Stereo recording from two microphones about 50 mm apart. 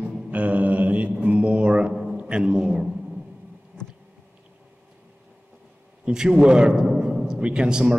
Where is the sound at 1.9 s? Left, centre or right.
Centre.